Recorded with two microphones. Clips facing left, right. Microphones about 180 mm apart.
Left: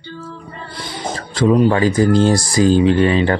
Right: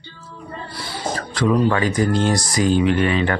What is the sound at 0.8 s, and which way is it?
Speech, 20° left (ahead or behind).